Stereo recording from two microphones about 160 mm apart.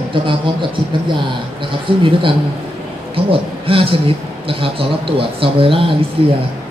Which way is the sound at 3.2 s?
35° right (ahead or behind).